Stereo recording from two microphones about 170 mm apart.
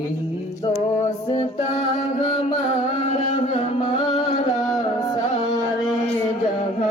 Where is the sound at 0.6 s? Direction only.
35° left (ahead or behind).